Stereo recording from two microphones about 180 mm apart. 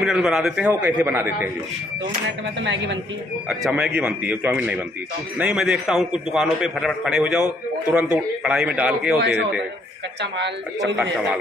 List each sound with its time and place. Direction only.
0.0 s a man's voice: centre (ahead or behind)
2.2 s speech: 85° right
3.4 s a man's voice: 5° right (ahead or behind)